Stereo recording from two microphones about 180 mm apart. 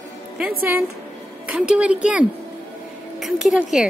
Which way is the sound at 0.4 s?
10° right (ahead or behind).